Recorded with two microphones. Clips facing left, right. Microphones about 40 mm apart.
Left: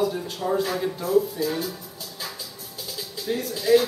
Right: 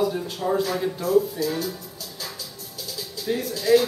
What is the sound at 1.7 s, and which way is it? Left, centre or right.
Music, left.